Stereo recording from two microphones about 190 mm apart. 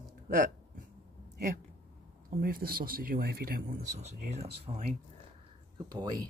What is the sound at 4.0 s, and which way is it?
Speech, 35° right (ahead or behind).